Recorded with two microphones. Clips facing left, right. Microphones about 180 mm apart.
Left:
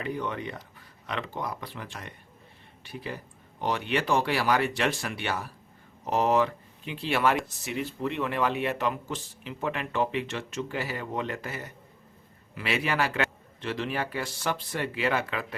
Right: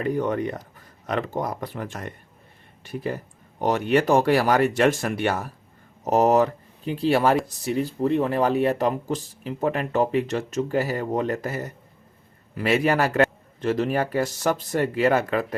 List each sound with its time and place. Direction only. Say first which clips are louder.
0.0 s a man's voice: right 8 dB; 45° right (ahead or behind)